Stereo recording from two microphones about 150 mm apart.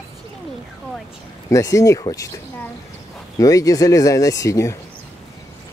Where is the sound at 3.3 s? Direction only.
20° left (ahead or behind).